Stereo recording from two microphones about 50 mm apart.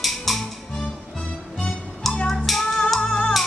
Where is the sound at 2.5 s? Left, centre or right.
Centre.